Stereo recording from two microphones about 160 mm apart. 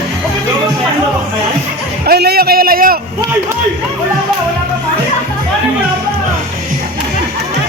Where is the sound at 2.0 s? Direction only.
90° right; by 3.0 s 65° right (ahead or behind).